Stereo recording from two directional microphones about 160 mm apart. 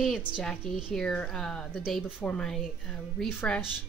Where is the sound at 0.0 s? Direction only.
Centre (ahead or behind).